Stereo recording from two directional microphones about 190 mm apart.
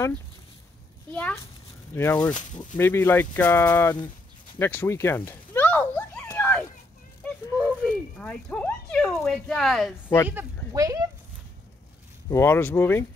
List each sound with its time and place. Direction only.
1.1 s speech: 5° left (ahead or behind)
4.6 s a sound: 10° left (ahead or behind)
7.2 s speech: 5° left (ahead or behind)
10.2 s speech: 15° right (ahead or behind)
12.3 s speech: 15° left (ahead or behind)